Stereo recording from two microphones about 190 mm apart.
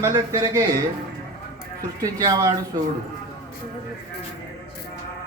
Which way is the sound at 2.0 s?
20° right (ahead or behind).